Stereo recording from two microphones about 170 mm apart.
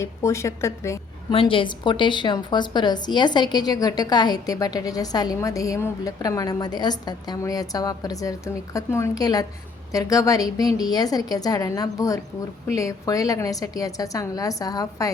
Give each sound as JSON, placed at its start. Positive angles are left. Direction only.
{"t": 0.0, "sound": "a woman's voice", "side_deg": 15}
{"t": 1.3, "sound": "a woman's voice", "side_deg": 30}